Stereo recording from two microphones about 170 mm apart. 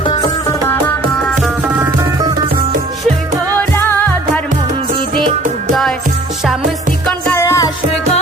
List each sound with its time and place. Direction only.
0.0 s music: 25° left (ahead or behind)
3.6 s music: 10° left (ahead or behind)
7.1 s music: 10° left (ahead or behind)